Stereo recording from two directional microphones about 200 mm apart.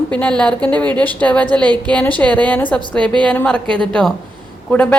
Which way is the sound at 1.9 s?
10° left (ahead or behind).